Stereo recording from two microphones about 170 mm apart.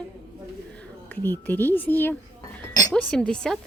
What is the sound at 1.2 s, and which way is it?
A woman's voice, 10° left (ahead or behind).